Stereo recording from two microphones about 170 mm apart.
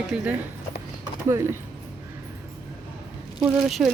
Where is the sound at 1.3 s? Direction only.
15° right (ahead or behind).